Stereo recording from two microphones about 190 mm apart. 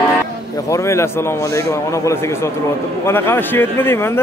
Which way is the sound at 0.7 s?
15° left (ahead or behind).